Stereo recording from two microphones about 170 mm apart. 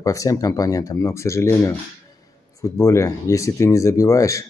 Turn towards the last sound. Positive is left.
turn(degrees=20)  # may be behind; listen again after turning